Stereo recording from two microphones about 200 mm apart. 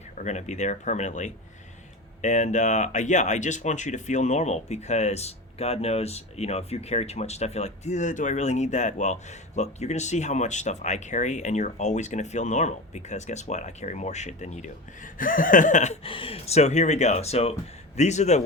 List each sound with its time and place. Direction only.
0.2 s speech: 35° left (ahead or behind)